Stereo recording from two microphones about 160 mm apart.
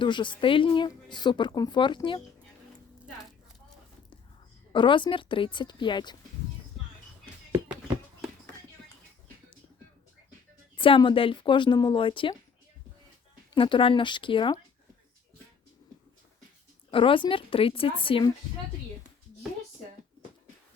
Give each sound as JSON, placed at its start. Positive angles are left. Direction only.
{"t": 0.0, "sound": "a woman's voice", "side_deg": 30}
{"t": 4.7, "sound": "a woman's voice", "side_deg": 30}
{"t": 10.8, "sound": "speech", "side_deg": 30}
{"t": 13.5, "sound": "speech", "side_deg": 30}
{"t": 16.9, "sound": "speech", "side_deg": 35}